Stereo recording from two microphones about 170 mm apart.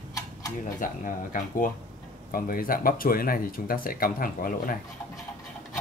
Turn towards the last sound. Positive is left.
turn(degrees=55)  # may be behind; listen again after turning